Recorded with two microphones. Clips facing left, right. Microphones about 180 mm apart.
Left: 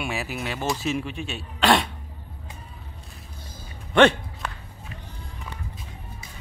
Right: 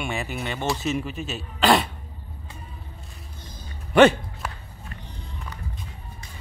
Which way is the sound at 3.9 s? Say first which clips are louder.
Right 2 dB; 5° right (ahead or behind).